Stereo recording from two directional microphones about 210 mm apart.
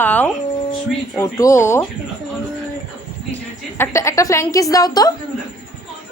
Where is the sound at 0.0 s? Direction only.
10° left (ahead or behind).